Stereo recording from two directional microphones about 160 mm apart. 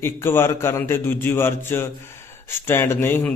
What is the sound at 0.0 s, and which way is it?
A man's voice, 15° left (ahead or behind).